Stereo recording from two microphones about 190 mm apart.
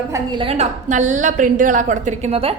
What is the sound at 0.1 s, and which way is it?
A woman's voice, 25° right (ahead or behind).